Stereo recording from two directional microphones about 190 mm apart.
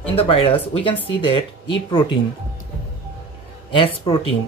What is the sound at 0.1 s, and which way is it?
Speech, 30° left (ahead or behind).